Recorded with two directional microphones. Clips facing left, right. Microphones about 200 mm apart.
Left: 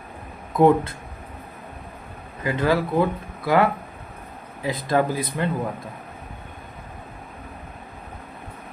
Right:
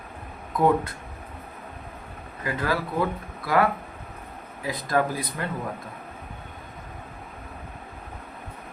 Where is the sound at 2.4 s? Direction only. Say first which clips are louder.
Left 6 dB; 25° left (ahead or behind).